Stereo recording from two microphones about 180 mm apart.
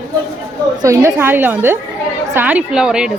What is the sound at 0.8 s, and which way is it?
A woman's voice, 15° right (ahead or behind).